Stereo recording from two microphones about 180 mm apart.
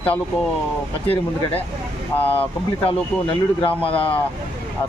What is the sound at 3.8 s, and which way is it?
Speech, 30° left (ahead or behind).